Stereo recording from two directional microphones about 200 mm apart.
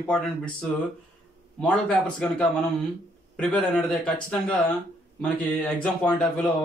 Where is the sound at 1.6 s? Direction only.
5° left (ahead or behind).